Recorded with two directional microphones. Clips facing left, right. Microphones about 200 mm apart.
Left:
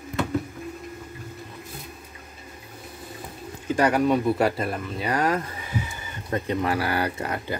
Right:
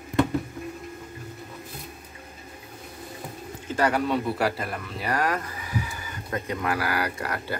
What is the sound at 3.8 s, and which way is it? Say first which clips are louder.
Speech: left 3 dB; 15° left (ahead or behind).